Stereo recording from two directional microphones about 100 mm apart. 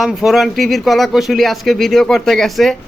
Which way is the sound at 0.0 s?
5° right (ahead or behind).